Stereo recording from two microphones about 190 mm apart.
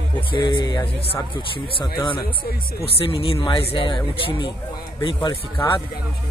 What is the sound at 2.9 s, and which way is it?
Speech, 30° left (ahead or behind).